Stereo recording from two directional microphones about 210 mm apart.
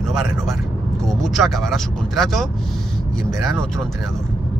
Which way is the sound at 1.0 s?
Centre (ahead or behind).